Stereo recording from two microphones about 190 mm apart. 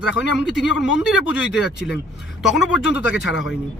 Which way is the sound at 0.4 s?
Centre (ahead or behind).